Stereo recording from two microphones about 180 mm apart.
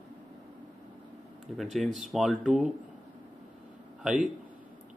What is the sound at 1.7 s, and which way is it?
Speech, centre (ahead or behind).